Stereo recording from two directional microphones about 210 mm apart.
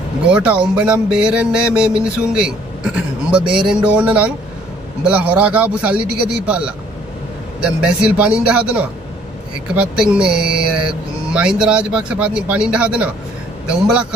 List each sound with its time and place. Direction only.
0.3 s a man's voice: 5° right (ahead or behind)